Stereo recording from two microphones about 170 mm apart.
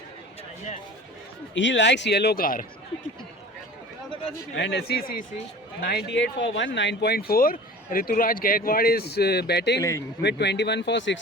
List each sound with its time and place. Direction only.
1.5 s speech: 90° left; by 2.6 s 55° left (ahead or behind)
4.5 s speech: 90° left; by 5.2 s 60° left (ahead or behind)
5.8 s speech: 80° left